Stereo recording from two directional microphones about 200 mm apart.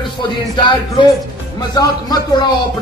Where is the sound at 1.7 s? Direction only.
20° left (ahead or behind).